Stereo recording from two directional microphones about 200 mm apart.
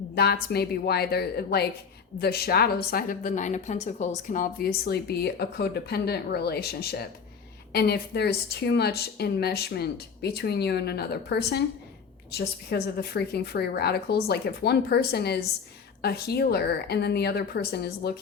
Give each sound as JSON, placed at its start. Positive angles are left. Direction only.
{"t": 0.1, "sound": "a woman's voice", "side_deg": 50}